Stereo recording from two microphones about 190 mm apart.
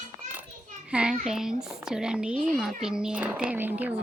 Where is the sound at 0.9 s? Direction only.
5° right (ahead or behind).